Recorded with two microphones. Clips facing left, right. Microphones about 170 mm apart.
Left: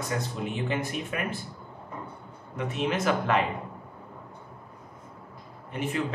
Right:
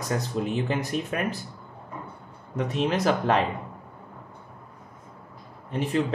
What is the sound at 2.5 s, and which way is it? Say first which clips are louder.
Speech: right 3 dB; 35° right (ahead or behind).